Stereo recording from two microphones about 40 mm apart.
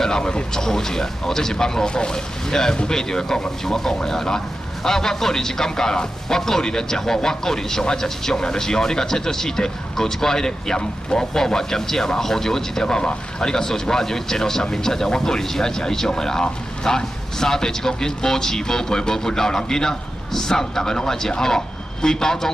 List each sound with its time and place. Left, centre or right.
0.0 s speech: centre